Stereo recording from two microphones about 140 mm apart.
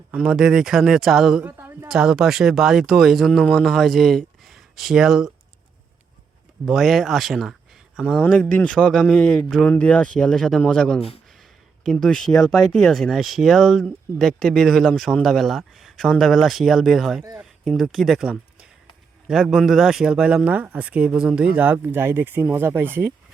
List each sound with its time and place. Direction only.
0.1 s speech: 5° right (ahead or behind)
1.5 s a sound: 20° right (ahead or behind)
1.9 s speech: 5° right (ahead or behind)
6.7 s speech: centre (ahead or behind)
8.2 s speech: 10° left (ahead or behind); by 23.1 s 15° right (ahead or behind)